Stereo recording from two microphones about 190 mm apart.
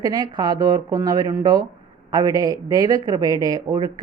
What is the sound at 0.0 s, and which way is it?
Speech, 20° right (ahead or behind).